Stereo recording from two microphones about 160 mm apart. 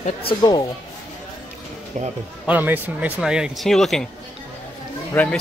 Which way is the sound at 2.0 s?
50° right (ahead or behind).